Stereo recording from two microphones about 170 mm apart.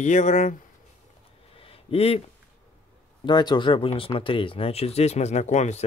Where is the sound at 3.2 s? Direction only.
25° left (ahead or behind); by 5.8 s 45° left (ahead or behind).